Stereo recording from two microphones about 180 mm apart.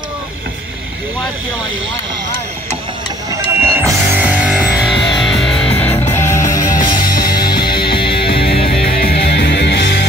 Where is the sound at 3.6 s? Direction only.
15° right (ahead or behind).